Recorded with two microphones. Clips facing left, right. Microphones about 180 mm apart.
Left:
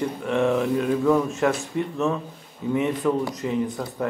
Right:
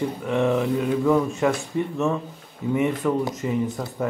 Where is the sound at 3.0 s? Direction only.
Centre (ahead or behind).